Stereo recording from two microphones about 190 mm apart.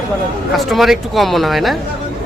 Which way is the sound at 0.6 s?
Centre (ahead or behind).